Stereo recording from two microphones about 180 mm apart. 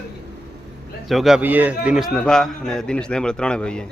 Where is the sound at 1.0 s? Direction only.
Centre (ahead or behind).